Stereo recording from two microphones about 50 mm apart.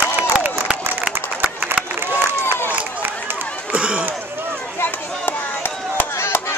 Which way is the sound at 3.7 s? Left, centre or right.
Right.